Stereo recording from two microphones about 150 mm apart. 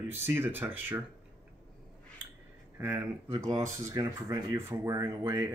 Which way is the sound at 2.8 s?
15° right (ahead or behind).